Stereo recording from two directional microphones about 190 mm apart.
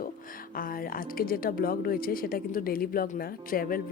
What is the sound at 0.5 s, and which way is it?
A woman's voice, 50° left (ahead or behind).